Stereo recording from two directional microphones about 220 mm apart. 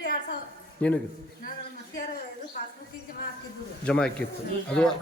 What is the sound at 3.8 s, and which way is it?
Speech, 5° left (ahead or behind).